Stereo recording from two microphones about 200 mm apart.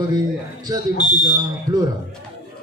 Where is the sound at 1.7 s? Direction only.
20° right (ahead or behind).